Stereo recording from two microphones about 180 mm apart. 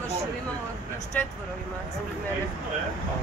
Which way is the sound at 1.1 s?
10° left (ahead or behind).